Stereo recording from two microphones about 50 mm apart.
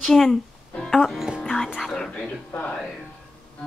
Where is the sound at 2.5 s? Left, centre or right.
Left.